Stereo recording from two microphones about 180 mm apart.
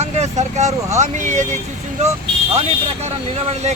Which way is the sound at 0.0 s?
40° right (ahead or behind).